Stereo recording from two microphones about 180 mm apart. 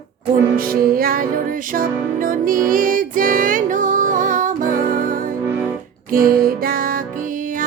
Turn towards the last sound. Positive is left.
turn(degrees=-50)  # may be behind; listen again after turning